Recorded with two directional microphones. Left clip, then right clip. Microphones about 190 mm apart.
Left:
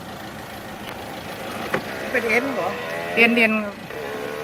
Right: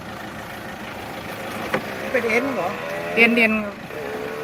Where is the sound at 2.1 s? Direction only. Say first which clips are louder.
Even; 45° right (ahead or behind).